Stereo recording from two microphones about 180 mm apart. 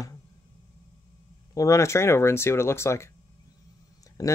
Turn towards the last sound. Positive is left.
turn(degrees=20)  # may be behind; listen again after turning